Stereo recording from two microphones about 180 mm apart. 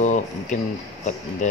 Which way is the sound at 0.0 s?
40° left (ahead or behind).